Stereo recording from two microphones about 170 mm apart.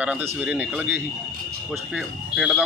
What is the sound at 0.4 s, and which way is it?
A man's voice, 5° right (ahead or behind).